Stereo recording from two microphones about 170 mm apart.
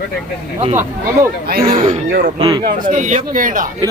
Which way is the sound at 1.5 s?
60° right (ahead or behind).